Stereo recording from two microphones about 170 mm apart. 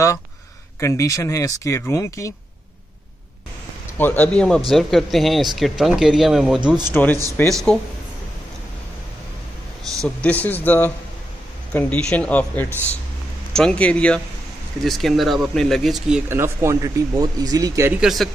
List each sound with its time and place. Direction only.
0.7 s speech: 20° left (ahead or behind)
4.0 s speech: 10° left (ahead or behind)
6.9 s speech: 10° left (ahead or behind)
10.2 s speech: 10° left (ahead or behind)
16.3 s speech: 15° right (ahead or behind)
18.0 s speech: centre (ahead or behind)